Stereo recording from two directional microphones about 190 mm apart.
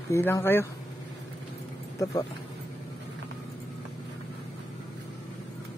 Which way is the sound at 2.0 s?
15° left (ahead or behind).